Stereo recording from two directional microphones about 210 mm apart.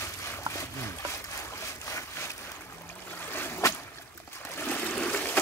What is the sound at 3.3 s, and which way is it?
Boat, 10° left (ahead or behind).